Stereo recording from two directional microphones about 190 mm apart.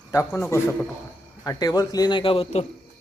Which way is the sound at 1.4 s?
20° left (ahead or behind).